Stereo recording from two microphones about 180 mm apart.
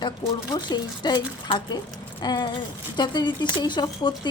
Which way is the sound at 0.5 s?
25° left (ahead or behind).